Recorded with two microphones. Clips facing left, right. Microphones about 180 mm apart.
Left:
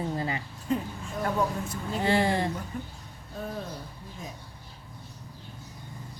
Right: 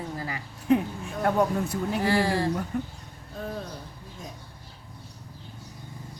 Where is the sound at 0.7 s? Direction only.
65° right (ahead or behind).